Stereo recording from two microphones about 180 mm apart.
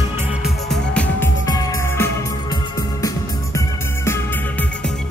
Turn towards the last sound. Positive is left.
turn(degrees=15)  # may be behind; listen again after turning